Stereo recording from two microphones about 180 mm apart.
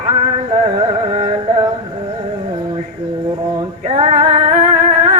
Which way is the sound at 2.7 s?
25° right (ahead or behind).